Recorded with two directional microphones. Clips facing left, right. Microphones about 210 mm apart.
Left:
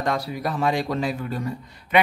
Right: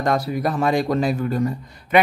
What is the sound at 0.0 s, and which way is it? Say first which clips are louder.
Speech: right 5 dB; 45° right (ahead or behind).